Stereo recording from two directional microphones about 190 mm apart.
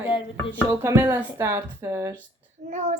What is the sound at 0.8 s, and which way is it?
Speech, 15° right (ahead or behind).